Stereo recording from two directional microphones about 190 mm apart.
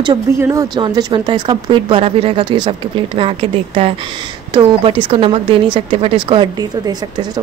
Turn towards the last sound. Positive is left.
turn(degrees=-20)  # may be behind; listen again after turning